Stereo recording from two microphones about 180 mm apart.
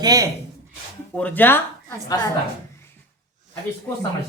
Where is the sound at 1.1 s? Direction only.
10° left (ahead or behind).